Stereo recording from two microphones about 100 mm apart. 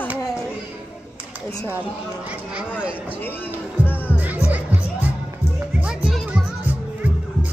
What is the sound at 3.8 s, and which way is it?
Music, 15° right (ahead or behind).